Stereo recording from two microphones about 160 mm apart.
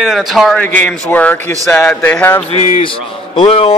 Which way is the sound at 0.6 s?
10° left (ahead or behind).